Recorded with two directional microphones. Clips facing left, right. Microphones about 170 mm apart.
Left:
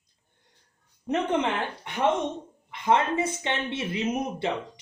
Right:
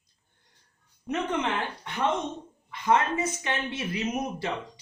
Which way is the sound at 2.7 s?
25° left (ahead or behind).